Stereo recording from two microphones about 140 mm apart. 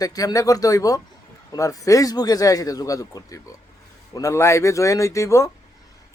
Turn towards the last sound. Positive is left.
turn(degrees=20)  # may be behind; listen again after turning